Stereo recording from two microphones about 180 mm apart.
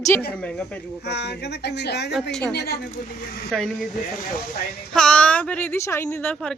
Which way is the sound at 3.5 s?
Centre (ahead or behind).